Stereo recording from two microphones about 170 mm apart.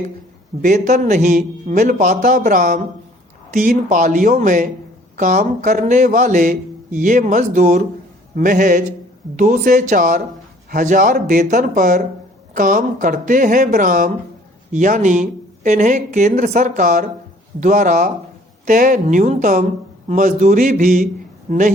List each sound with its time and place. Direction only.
0.6 s speech: 45° right (ahead or behind)
3.8 s speech: 50° right (ahead or behind)